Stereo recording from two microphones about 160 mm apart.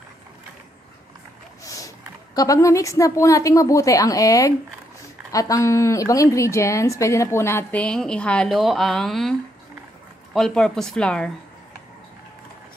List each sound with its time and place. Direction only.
1.6 s a woman's voice: 20° left (ahead or behind)